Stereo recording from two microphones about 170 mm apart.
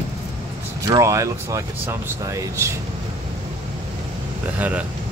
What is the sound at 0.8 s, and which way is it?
Speech, 20° right (ahead or behind).